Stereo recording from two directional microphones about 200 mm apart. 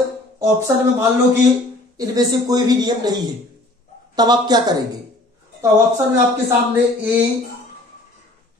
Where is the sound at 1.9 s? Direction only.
20° right (ahead or behind).